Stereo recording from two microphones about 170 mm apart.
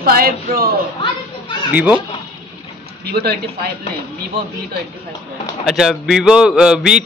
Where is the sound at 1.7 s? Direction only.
10° right (ahead or behind).